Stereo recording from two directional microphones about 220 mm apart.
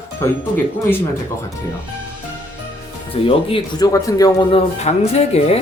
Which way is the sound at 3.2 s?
25° left (ahead or behind).